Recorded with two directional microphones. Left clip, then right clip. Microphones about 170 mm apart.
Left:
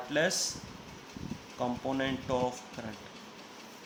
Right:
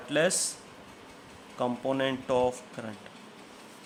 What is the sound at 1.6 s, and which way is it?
Speech, 30° right (ahead or behind).